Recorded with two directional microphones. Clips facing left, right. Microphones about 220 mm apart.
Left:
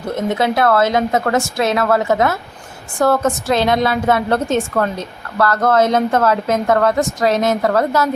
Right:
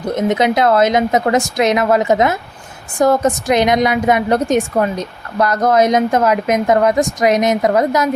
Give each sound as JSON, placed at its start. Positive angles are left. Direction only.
{"t": 0.1, "sound": "a woman's voice", "side_deg": -20}